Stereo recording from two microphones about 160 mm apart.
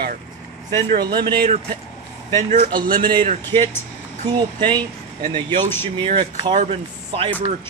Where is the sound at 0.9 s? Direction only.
30° right (ahead or behind).